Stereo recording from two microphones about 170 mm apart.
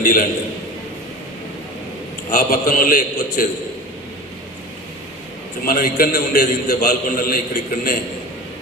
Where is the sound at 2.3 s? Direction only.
55° left (ahead or behind).